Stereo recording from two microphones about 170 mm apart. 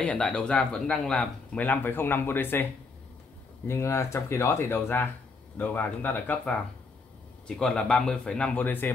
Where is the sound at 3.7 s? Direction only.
15° left (ahead or behind).